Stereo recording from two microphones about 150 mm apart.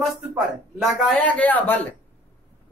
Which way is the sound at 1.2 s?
10° left (ahead or behind).